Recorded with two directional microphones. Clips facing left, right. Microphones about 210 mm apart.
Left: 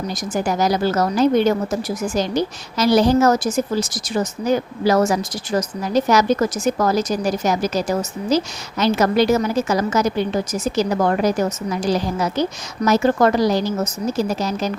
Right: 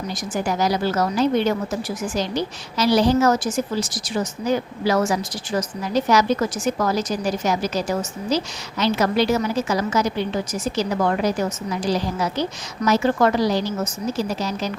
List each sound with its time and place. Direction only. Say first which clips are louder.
0.4 s a woman's voice: left 3 dB; 45° left (ahead or behind)